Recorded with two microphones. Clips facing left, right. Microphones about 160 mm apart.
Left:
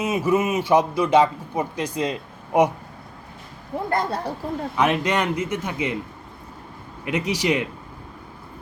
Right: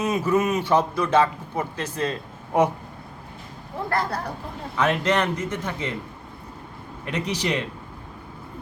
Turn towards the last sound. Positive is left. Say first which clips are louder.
# left 3 dB
turn(degrees=10)  # may be behind; listen again after turning